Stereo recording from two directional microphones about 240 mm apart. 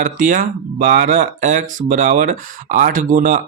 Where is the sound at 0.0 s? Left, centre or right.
Right.